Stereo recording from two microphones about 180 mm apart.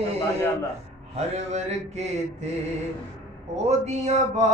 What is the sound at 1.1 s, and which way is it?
Mantra, 35° right (ahead or behind).